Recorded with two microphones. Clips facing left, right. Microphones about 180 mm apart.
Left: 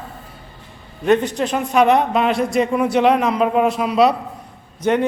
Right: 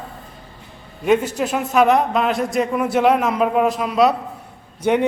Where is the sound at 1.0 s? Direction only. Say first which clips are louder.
Left 1 dB; 5° right (ahead or behind).